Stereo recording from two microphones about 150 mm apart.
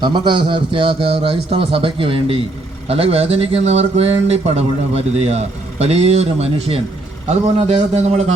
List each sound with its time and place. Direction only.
0.0 s a man's voice: 30° right (ahead or behind); by 8.2 s 50° right (ahead or behind)